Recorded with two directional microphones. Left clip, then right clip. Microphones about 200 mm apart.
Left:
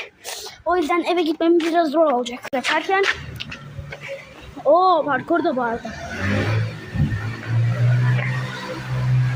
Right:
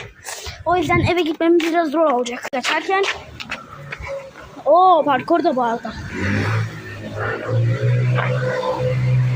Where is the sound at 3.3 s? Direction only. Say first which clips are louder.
Right 4 dB; 30° right (ahead or behind).